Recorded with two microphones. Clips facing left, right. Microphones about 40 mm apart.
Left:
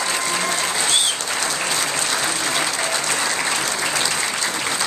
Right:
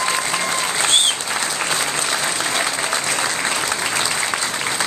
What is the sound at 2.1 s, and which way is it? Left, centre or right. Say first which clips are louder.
Applause: right 1 dB; centre.